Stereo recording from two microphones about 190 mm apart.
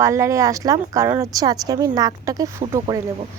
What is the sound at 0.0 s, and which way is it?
Speech, 15° right (ahead or behind).